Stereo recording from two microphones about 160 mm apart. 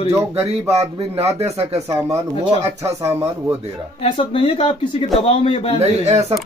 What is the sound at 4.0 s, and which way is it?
Speech, 35° left (ahead or behind).